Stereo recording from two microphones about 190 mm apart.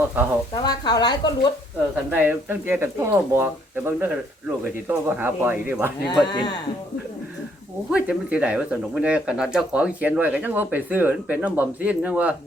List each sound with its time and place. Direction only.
0.5 s speech: 20° left (ahead or behind)
2.0 s speech: 10° right (ahead or behind)
6.1 s speech: 20° left (ahead or behind)
7.9 s speech: 5° right (ahead or behind)